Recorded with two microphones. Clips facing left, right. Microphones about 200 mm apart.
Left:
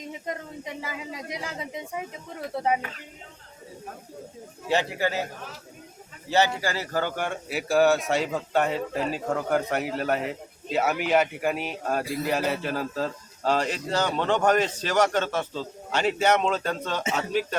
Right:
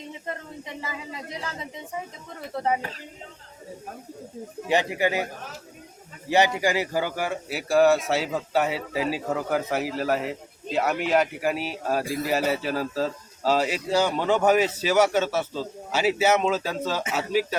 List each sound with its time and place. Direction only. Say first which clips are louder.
0.3 s speech: left 1 dB; 10° left (ahead or behind)
4.7 s speech: right 2 dB; 15° right (ahead or behind)
6.2 s a man's voice: right 2 dB; 15° right (ahead or behind)